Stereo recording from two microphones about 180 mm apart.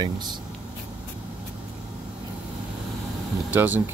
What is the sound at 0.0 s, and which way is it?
Speech, 25° right (ahead or behind).